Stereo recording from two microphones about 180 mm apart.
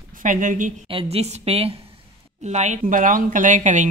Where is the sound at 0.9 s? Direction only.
30° right (ahead or behind).